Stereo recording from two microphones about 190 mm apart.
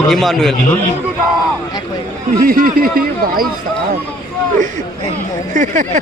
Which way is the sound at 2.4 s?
50° right (ahead or behind).